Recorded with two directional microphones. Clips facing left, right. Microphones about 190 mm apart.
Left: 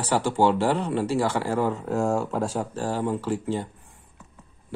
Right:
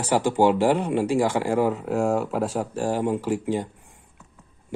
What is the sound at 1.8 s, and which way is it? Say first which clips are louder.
Speech: right 2 dB; centre (ahead or behind).